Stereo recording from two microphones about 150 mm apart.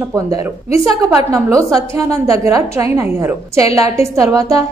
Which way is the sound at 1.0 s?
20° right (ahead or behind).